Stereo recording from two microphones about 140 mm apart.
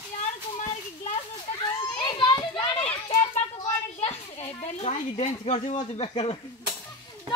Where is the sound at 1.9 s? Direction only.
35° left (ahead or behind).